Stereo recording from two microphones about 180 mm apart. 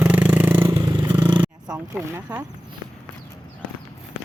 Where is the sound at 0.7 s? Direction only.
30° right (ahead or behind).